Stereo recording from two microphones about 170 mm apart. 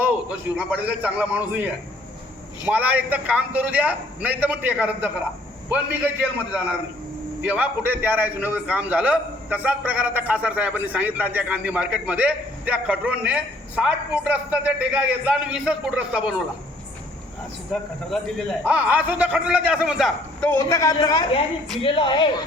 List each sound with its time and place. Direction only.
0.0 s a man's voice: 10° right (ahead or behind)
7.4 s a man's voice: 10° right (ahead or behind)
17.7 s a man's voice: centre (ahead or behind)
20.4 s a man's voice: 15° left (ahead or behind)